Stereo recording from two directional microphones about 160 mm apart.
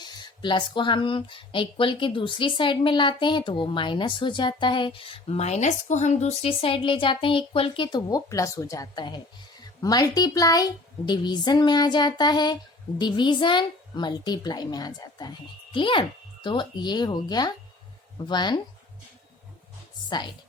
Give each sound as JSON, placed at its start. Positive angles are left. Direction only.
{"t": 0.0, "sound": "a woman's voice", "side_deg": 25}
{"t": 20.1, "sound": "speech", "side_deg": 30}